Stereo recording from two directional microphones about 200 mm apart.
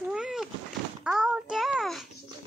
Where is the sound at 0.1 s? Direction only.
5° right (ahead or behind).